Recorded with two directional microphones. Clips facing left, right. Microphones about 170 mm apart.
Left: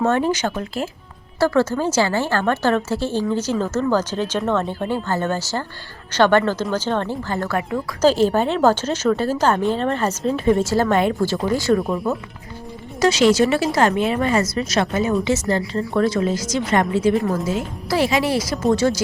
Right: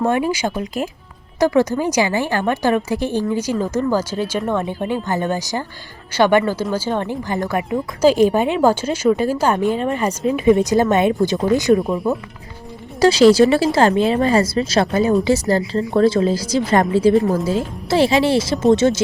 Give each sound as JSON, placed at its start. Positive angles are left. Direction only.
{"t": 0.0, "sound": "a woman's voice", "side_deg": -10}
{"t": 11.8, "sound": "speech", "side_deg": 0}
{"t": 13.0, "sound": "a woman's voice", "side_deg": -35}